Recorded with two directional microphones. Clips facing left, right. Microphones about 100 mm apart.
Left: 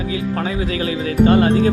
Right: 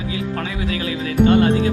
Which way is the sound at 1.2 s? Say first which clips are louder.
Left 1 dB; 35° left (ahead or behind).